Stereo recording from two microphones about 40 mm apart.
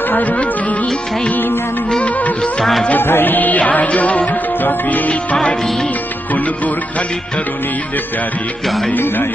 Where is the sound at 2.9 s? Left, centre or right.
Left.